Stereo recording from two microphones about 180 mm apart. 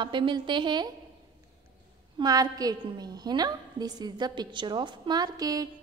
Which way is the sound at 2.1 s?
20° right (ahead or behind).